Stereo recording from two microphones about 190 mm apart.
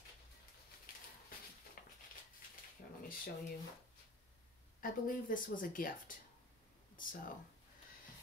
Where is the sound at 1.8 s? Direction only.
50° left (ahead or behind).